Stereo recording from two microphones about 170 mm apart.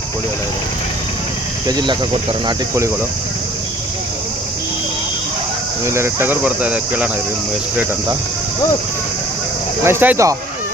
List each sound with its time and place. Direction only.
1.6 s speech: 25° right (ahead or behind)
5.8 s speech: 15° right (ahead or behind)
9.8 s speech: 10° right (ahead or behind)